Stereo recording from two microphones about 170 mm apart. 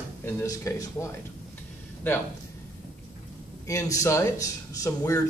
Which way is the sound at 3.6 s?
20° left (ahead or behind).